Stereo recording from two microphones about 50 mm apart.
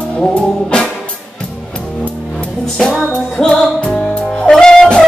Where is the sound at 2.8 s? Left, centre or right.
Centre.